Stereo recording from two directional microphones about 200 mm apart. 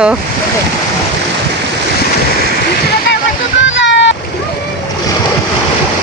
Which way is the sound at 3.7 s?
65° left (ahead or behind).